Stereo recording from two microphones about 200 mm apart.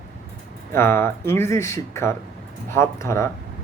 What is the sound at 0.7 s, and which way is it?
Speech, 10° left (ahead or behind).